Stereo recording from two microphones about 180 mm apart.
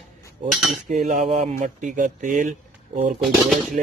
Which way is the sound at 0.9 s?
40° right (ahead or behind).